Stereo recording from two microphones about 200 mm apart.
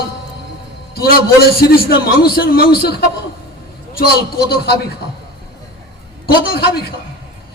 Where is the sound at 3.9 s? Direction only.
50° left (ahead or behind).